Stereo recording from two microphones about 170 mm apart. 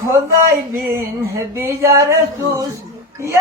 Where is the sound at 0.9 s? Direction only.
15° right (ahead or behind).